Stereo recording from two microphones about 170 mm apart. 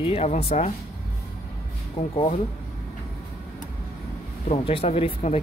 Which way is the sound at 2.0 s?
40° left (ahead or behind).